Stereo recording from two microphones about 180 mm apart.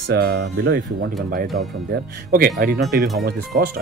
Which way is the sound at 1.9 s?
55° right (ahead or behind).